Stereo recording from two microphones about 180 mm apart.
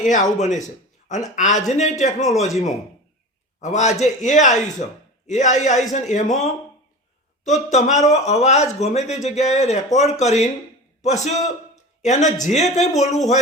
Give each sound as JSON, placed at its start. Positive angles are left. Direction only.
{"t": 0.0, "sound": "speech", "side_deg": 45}
{"t": 7.7, "sound": "speech", "side_deg": 40}